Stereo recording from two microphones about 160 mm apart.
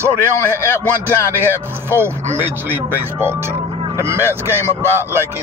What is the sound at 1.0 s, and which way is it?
Speech, 15° right (ahead or behind).